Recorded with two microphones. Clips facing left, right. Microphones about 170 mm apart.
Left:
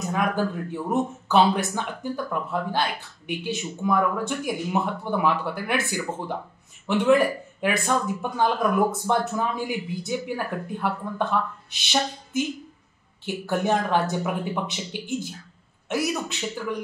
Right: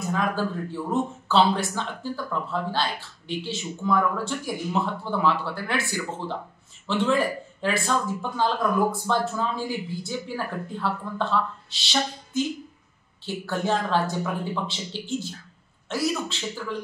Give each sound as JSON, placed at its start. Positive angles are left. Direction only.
{"t": 0.1, "sound": "speech", "side_deg": 15}
{"t": 7.6, "sound": "speech", "side_deg": 15}